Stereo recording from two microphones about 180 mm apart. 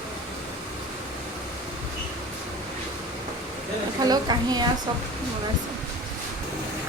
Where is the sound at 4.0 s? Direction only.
20° right (ahead or behind).